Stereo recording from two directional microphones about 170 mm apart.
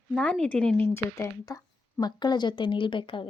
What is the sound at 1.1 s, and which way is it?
Speech, 20° left (ahead or behind).